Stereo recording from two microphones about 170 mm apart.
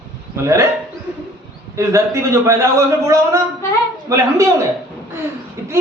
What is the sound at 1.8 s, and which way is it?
A man's voice, 15° right (ahead or behind).